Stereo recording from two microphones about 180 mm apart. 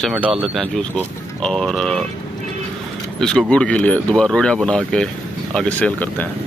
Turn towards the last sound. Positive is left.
turn(degrees=10)  # may be behind; listen again after turning